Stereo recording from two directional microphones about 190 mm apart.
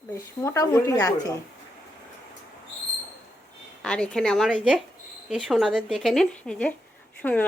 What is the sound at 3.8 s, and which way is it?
A woman's voice, 5° left (ahead or behind).